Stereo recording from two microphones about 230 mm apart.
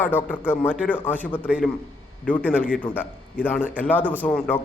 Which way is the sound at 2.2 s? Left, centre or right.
Centre.